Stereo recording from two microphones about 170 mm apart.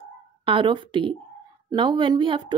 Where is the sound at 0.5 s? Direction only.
30° right (ahead or behind).